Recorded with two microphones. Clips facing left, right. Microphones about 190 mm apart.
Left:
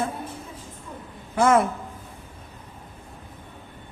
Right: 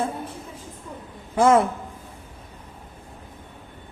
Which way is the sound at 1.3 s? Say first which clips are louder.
Right 2 dB; 15° right (ahead or behind).